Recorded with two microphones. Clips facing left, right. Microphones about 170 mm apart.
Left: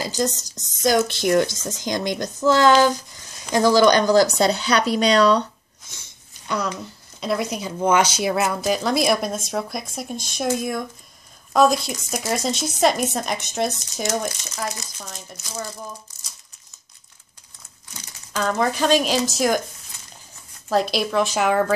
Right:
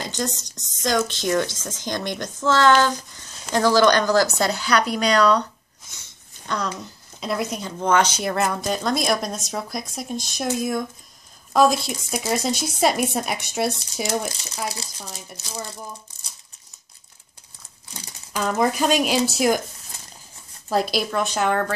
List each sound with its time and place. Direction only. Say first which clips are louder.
0.0 s speech: left 4 dB; 5° left (ahead or behind); by 5.5 s 25° left (ahead or behind)
7.2 s speech: left 2 dB; centre (ahead or behind)
14.8 s speech: right 1 dB; 30° right (ahead or behind)
18.3 s speech: even; 10° right (ahead or behind)
20.7 s speech: left 2 dB; centre (ahead or behind)